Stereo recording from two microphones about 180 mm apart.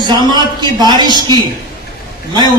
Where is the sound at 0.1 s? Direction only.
25° right (ahead or behind).